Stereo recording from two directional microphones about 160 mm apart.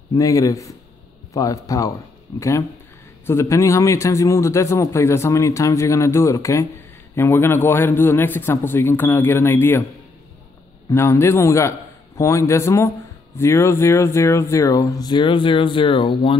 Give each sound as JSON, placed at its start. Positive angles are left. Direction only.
{"t": 0.1, "sound": "speech", "side_deg": 20}
{"t": 3.3, "sound": "a man's voice", "side_deg": 15}
{"t": 10.9, "sound": "a man's voice", "side_deg": 15}